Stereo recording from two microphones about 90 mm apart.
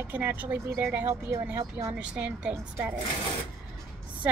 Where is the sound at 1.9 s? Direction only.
15° right (ahead or behind).